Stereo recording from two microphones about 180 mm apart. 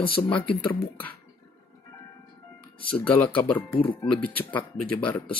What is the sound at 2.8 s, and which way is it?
Speech, 10° left (ahead or behind).